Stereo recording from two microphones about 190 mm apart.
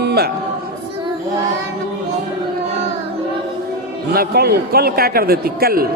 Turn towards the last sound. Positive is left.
turn(degrees=-55)  # may be behind; listen again after turning